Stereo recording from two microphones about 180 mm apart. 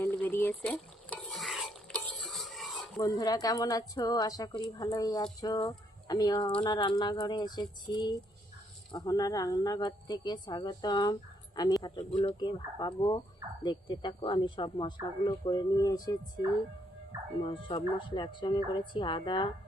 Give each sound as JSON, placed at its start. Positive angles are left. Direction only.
{"t": 0.0, "sound": "a sound", "side_deg": 10}
{"t": 0.6, "sound": "stir", "side_deg": 5}
{"t": 3.0, "sound": "speech", "side_deg": 20}
{"t": 17.4, "sound": "speech", "side_deg": 30}